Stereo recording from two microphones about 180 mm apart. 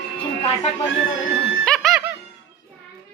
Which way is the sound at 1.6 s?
Centre (ahead or behind).